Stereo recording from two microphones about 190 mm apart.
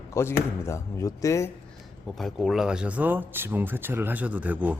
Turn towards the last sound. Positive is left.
turn(degrees=-10)  # may be behind; listen again after turning